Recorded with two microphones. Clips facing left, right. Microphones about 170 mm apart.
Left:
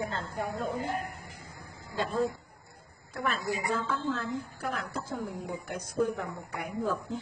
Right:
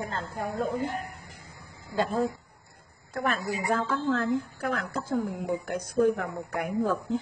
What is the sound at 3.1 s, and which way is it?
A woman's voice, 55° right (ahead or behind).